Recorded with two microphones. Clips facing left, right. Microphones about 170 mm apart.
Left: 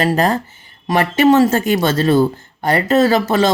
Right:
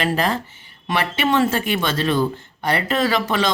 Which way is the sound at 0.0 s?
40° left (ahead or behind).